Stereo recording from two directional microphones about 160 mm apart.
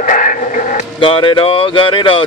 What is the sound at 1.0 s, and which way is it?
Speech, 35° left (ahead or behind).